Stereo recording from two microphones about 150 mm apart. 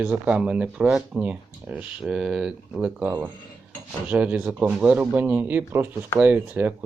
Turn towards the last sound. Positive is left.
turn(degrees=-10)  # may be behind; listen again after turning